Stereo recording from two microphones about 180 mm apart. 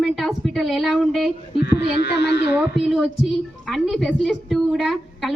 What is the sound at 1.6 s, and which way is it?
Speech, 65° left (ahead or behind).